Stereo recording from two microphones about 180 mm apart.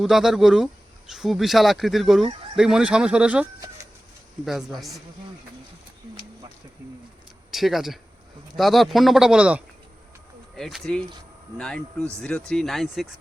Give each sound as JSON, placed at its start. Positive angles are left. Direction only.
{"t": 0.0, "sound": "speech", "side_deg": 0}
{"t": 7.5, "sound": "speech", "side_deg": 0}